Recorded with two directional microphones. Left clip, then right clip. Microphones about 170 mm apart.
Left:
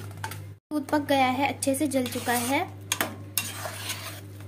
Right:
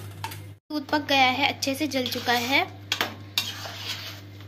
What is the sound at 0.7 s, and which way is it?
Speech, 20° left (ahead or behind).